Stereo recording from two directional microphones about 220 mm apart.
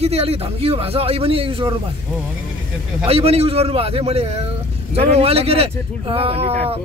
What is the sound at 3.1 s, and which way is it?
A man's voice, 25° right (ahead or behind).